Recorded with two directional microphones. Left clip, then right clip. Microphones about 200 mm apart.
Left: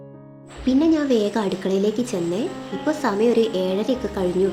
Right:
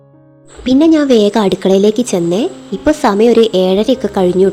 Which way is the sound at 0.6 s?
50° right (ahead or behind).